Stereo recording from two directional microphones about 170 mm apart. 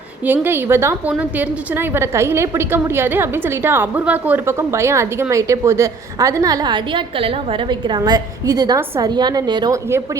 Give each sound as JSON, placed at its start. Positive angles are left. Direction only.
{"t": 0.4, "sound": "a woman's voice", "side_deg": -15}